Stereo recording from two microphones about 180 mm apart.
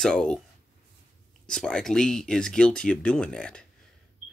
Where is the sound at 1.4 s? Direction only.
5° left (ahead or behind).